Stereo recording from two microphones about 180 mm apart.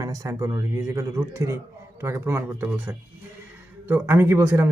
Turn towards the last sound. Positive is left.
turn(degrees=-15)  # may be behind; listen again after turning